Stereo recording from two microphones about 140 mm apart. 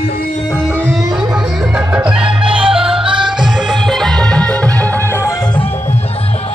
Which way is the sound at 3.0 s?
35° right (ahead or behind).